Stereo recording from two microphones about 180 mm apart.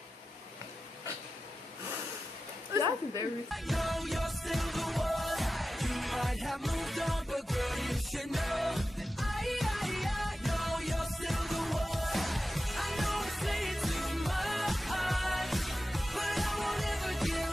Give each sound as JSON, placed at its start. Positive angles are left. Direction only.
{"t": 2.7, "sound": "speech", "side_deg": -20}
{"t": 3.6, "sound": "music", "side_deg": 0}